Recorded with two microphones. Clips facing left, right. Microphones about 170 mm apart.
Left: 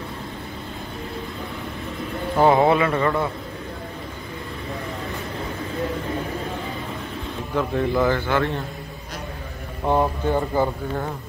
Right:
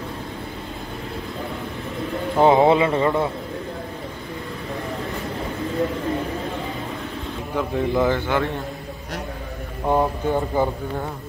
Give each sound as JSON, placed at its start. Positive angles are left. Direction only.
{"t": 2.3, "sound": "a man's voice", "side_deg": -20}
{"t": 7.5, "sound": "a man's voice", "side_deg": -15}
{"t": 9.8, "sound": "speech", "side_deg": 0}